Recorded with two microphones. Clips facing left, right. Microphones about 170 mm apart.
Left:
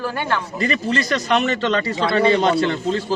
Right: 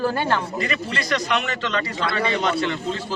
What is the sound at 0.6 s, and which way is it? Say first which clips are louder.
A man's voice: left 6 dB; 35° left (ahead or behind).